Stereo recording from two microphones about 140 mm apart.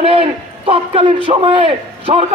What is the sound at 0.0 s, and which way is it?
A man's voice, 45° right (ahead or behind).